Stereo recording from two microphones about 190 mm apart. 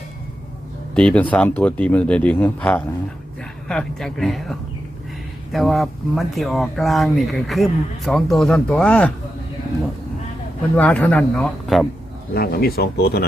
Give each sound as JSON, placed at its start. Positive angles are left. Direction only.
{"t": 0.9, "sound": "speech", "side_deg": 5}
{"t": 10.8, "sound": "speech", "side_deg": 5}
{"t": 12.3, "sound": "speech", "side_deg": 55}